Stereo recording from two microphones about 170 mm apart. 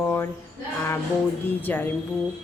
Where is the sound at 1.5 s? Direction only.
10° left (ahead or behind).